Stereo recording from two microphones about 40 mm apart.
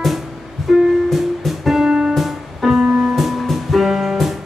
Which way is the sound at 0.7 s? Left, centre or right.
Centre.